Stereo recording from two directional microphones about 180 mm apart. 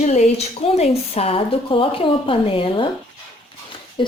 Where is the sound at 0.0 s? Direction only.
40° left (ahead or behind).